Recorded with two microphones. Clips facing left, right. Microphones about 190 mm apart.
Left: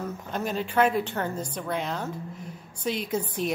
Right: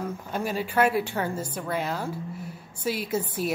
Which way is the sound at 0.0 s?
10° right (ahead or behind).